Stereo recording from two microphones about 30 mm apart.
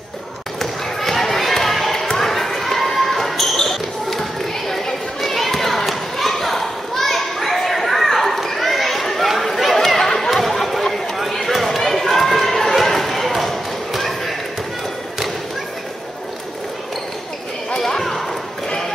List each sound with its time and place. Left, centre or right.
0.6 s basketball bounce: centre
5.3 s children playing: centre
9.4 s chatter: centre
10.3 s run: centre
17.7 s clip-clop: centre